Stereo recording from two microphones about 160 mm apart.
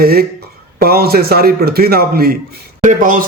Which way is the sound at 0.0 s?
70° right (ahead or behind).